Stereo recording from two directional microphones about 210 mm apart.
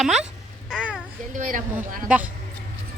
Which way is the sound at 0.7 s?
5° right (ahead or behind).